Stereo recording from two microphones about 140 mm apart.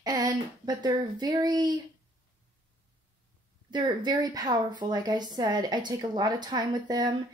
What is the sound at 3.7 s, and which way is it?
A woman's voice, 30° right (ahead or behind).